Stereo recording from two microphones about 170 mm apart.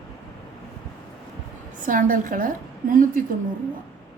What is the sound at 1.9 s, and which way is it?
Speech, 55° right (ahead or behind).